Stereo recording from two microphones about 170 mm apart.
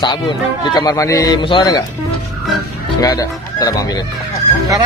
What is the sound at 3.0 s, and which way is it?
A man's voice, 20° left (ahead or behind).